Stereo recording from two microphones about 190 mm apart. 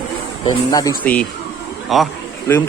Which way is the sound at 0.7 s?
20° left (ahead or behind).